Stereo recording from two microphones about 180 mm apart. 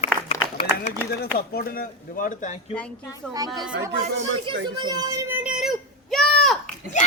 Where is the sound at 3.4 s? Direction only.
20° right (ahead or behind).